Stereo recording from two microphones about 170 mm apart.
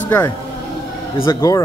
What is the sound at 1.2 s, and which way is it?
Speech, 20° left (ahead or behind).